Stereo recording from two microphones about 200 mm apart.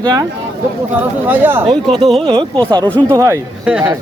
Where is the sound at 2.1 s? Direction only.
25° right (ahead or behind).